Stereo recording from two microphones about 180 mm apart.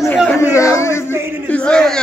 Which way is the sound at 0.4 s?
15° left (ahead or behind).